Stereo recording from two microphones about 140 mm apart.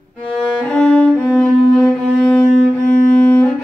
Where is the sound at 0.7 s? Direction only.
5° left (ahead or behind).